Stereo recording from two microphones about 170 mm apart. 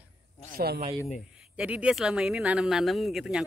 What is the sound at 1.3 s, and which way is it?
Speech, 5° right (ahead or behind).